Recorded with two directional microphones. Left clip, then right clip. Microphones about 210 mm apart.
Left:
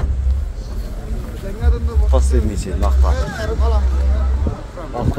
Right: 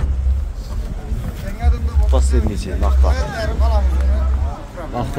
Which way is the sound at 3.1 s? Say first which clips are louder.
Even; 55° right (ahead or behind).